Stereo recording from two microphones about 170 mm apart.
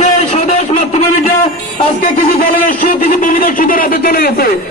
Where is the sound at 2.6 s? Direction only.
50° left (ahead or behind).